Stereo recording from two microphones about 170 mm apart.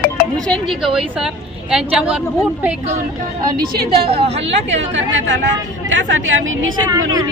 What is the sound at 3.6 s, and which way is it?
Speech, 65° right (ahead or behind).